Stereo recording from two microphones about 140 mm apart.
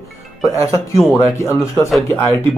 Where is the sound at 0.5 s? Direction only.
20° left (ahead or behind).